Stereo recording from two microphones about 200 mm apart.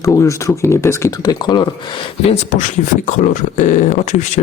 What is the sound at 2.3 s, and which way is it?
Speech, 30° left (ahead or behind).